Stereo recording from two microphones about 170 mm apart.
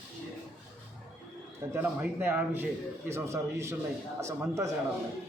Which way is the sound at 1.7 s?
10° right (ahead or behind).